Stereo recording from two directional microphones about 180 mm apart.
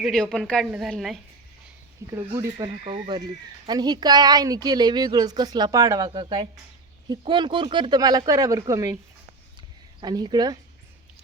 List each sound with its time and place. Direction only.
0.0 s a woman's voice: 5° left (ahead or behind)
2.0 s speech: 15° right (ahead or behind)
2.8 s a woman's voice: 30° right (ahead or behind)
9.6 s a sound: 25° right (ahead or behind)